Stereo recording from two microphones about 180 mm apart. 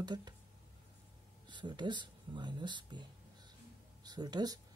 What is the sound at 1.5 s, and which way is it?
Speech, 25° right (ahead or behind).